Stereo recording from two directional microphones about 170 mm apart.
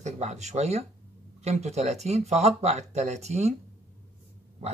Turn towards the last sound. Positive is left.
turn(degrees=-40)  # may be behind; listen again after turning